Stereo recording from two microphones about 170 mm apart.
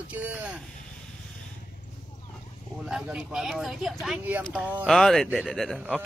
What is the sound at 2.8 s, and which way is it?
Speech, 5° right (ahead or behind).